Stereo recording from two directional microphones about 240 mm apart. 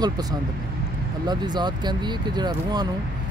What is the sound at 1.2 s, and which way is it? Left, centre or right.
Speech, centre.